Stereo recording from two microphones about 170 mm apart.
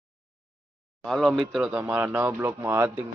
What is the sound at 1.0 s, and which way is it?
Speech, centre (ahead or behind).